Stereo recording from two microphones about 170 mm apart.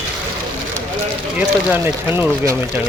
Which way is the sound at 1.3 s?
10° right (ahead or behind).